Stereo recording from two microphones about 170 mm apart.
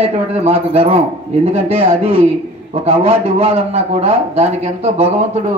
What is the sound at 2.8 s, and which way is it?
Speech, 35° right (ahead or behind).